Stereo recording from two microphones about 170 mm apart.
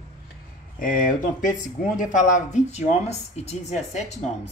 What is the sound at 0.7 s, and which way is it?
Speech, 55° left (ahead or behind).